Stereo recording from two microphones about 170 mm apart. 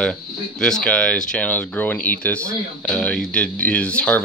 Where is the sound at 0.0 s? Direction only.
5° left (ahead or behind).